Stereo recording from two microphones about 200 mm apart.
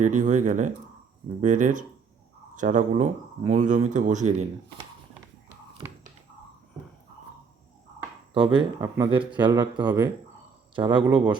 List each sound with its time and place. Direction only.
0.0 s speech: 35° right (ahead or behind)
8.3 s speech: 25° right (ahead or behind)